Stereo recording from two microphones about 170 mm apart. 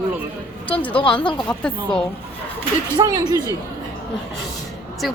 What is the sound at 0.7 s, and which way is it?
Speech, 10° left (ahead or behind).